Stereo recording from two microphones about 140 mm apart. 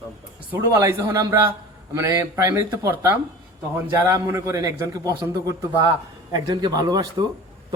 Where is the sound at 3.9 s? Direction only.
20° right (ahead or behind).